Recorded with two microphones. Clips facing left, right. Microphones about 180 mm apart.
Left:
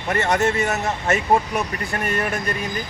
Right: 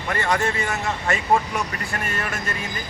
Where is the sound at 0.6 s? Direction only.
40° left (ahead or behind).